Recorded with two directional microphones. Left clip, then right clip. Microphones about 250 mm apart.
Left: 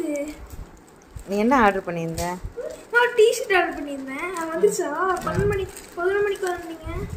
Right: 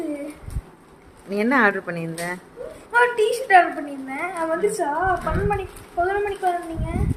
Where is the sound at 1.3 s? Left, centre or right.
Centre.